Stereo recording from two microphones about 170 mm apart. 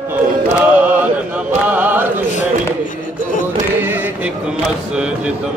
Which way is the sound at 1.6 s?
10° right (ahead or behind).